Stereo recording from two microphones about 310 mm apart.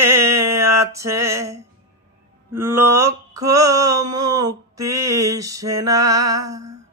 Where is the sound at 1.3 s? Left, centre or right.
Centre.